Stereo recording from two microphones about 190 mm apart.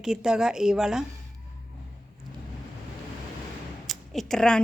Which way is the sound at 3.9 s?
Centre (ahead or behind).